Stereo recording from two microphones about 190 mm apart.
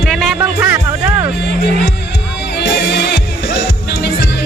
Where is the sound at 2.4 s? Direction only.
65° left (ahead or behind).